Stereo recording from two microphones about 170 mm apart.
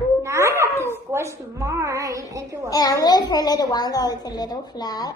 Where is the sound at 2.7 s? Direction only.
20° left (ahead or behind).